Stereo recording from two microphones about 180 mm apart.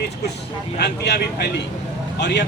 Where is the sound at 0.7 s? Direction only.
65° left (ahead or behind).